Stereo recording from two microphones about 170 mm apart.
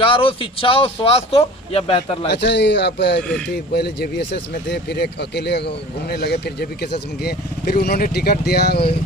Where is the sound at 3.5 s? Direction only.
70° left (ahead or behind).